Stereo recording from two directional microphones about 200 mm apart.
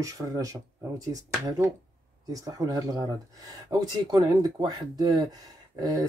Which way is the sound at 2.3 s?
15° right (ahead or behind).